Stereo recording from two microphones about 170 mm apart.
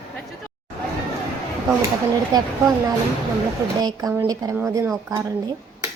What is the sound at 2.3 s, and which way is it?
Speech, 20° right (ahead or behind).